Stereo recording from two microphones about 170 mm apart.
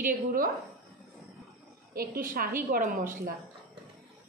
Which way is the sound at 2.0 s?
55° right (ahead or behind).